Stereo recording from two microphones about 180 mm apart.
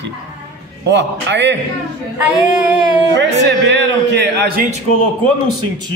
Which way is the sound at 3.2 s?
75° right (ahead or behind).